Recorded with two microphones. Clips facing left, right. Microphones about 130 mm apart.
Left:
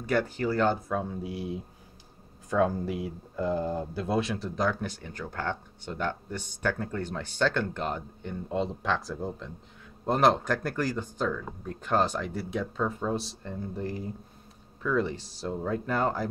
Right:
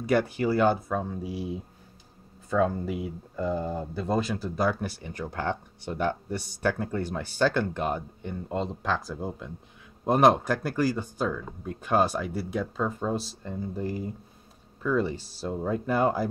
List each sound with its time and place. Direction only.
0.0 s speech: 10° right (ahead or behind)